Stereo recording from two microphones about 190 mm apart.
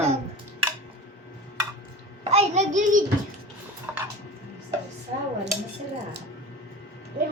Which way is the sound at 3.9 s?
10° right (ahead or behind).